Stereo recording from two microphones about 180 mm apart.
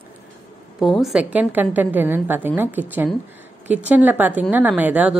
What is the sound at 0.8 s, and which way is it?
A woman's voice, centre (ahead or behind).